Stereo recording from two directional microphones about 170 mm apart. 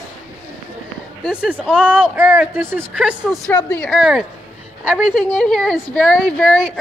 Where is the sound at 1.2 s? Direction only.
5° right (ahead or behind).